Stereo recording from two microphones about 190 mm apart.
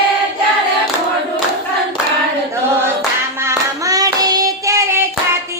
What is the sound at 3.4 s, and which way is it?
Hands, 15° right (ahead or behind).